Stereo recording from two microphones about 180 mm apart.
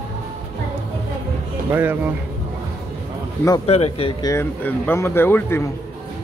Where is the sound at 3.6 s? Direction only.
35° left (ahead or behind).